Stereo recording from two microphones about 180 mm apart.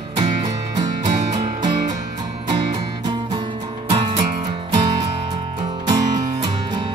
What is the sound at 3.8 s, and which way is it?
Music, 30° right (ahead or behind).